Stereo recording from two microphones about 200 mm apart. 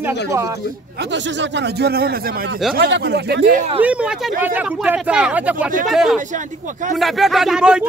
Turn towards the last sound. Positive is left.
turn(degrees=-5)  # may be behind; listen again after turning